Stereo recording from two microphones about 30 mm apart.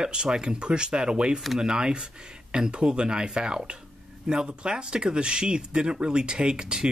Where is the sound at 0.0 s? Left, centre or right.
Right.